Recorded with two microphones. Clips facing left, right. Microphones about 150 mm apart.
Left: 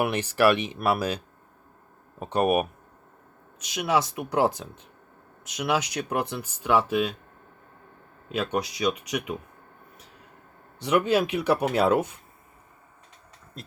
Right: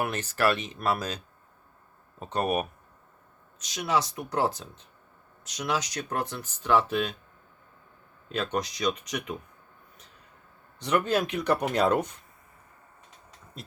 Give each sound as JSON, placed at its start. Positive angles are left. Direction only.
{"t": 0.0, "sound": "speech", "side_deg": 10}
{"t": 8.3, "sound": "speech", "side_deg": 10}
{"t": 10.8, "sound": "speech", "side_deg": 10}
{"t": 13.6, "sound": "vehicle", "side_deg": 0}